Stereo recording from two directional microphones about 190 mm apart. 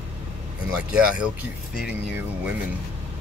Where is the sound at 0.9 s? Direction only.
5° right (ahead or behind).